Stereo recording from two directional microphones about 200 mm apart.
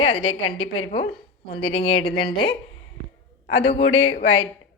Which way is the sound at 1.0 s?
55° left (ahead or behind).